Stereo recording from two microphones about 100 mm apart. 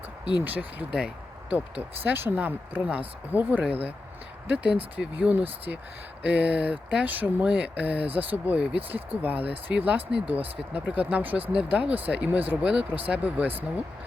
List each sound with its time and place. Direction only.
0.4 s speech: 15° right (ahead or behind)
0.9 s a sound: 10° right (ahead or behind)
2.0 s speech: 20° right (ahead or behind)